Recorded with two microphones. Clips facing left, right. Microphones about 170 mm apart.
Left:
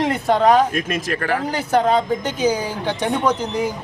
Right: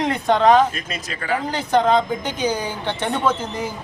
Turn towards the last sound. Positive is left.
turn(degrees=10)  # may be behind; listen again after turning